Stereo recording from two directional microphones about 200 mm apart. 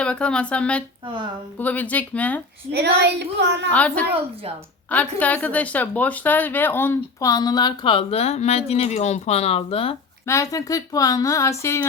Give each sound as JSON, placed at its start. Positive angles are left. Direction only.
{"t": 0.0, "sound": "speech", "side_deg": 5}
{"t": 1.0, "sound": "a woman's voice", "side_deg": -25}
{"t": 1.5, "sound": "a woman's voice", "side_deg": 10}
{"t": 2.7, "sound": "speech", "side_deg": -55}
{"t": 3.7, "sound": "a woman's voice", "side_deg": 5}
{"t": 10.2, "sound": "a woman's voice", "side_deg": 15}